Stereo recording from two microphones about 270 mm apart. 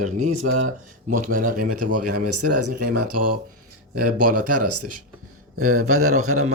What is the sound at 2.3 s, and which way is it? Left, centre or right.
Speech, right.